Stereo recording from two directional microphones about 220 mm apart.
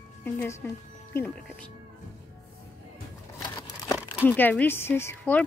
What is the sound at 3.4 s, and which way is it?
Crumpling, 15° left (ahead or behind).